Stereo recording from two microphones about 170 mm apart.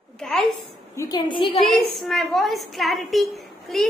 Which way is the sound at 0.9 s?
20° left (ahead or behind).